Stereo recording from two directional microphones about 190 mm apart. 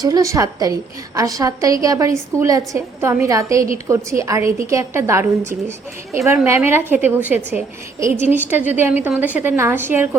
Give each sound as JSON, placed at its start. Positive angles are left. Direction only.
{"t": 0.0, "sound": "a woman's voice", "side_deg": -20}